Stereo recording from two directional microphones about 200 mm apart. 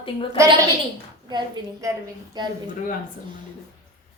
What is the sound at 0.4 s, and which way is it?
A woman's voice, 15° right (ahead or behind).